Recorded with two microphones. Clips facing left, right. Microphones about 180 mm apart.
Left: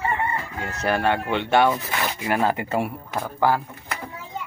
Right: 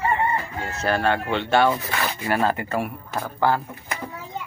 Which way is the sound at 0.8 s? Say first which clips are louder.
Even; 15° left (ahead or behind).